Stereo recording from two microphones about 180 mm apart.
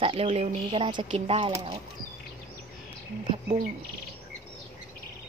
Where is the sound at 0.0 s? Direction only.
30° right (ahead or behind).